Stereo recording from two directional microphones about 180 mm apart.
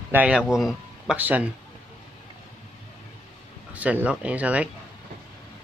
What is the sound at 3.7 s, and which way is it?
Speech, 10° right (ahead or behind).